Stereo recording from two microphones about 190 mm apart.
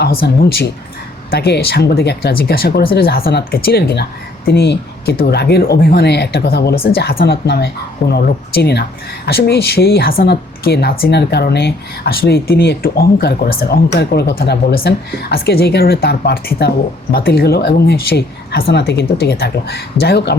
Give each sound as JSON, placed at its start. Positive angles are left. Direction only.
{"t": 0.0, "sound": "speech", "side_deg": 55}